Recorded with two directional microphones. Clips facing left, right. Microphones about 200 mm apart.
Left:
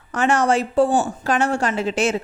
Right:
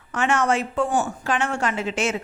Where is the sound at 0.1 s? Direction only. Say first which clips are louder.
Left 3 dB; 35° left (ahead or behind).